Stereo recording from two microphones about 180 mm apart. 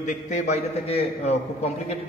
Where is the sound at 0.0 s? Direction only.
45° left (ahead or behind).